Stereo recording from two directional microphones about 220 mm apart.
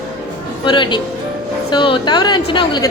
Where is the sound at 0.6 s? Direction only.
20° left (ahead or behind).